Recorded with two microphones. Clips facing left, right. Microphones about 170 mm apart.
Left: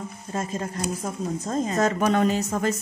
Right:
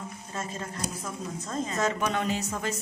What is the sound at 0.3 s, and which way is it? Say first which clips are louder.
A woman's voice: left 7 dB; 40° left (ahead or behind).